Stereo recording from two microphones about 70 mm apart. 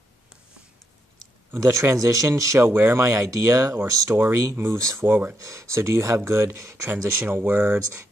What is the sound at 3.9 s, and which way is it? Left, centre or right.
Speech, right.